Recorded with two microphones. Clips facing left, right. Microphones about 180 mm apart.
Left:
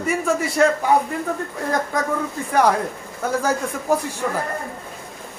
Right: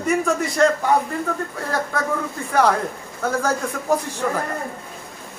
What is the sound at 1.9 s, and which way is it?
Speech, 15° left (ahead or behind).